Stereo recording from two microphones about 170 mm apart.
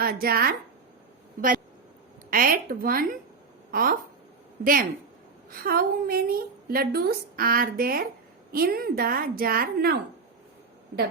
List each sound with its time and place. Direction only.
0.0 s a woman's voice: 60° right (ahead or behind)
2.3 s a woman's voice: 55° right (ahead or behind)